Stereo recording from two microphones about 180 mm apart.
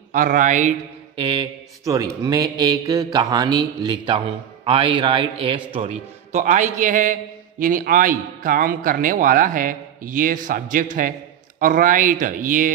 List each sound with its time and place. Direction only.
0.1 s a man's voice: 45° right (ahead or behind)
1.1 s speech: 30° right (ahead or behind)
5.8 s a man's voice: 40° right (ahead or behind)